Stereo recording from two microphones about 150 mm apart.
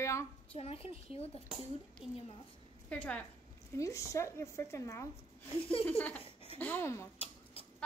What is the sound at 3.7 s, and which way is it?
Speech, 20° left (ahead or behind).